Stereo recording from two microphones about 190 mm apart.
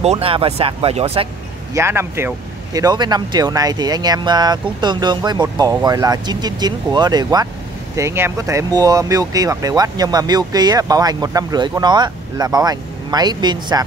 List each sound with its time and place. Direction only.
0.0 s speech: 30° right (ahead or behind)
1.7 s speech: 15° right (ahead or behind)